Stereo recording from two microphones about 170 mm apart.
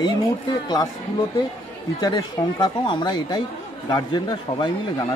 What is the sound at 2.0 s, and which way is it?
Speech, 25° left (ahead or behind).